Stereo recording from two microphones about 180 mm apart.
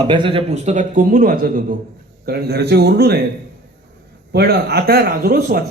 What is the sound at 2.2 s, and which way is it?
Speech, 60° right (ahead or behind).